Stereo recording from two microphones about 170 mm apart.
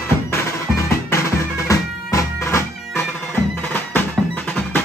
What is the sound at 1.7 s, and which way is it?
Bagpipes, 20° left (ahead or behind).